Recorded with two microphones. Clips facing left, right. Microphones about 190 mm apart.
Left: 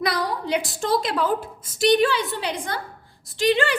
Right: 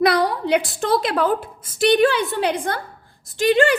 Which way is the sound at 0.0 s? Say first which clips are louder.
Right 7 dB; 60° right (ahead or behind).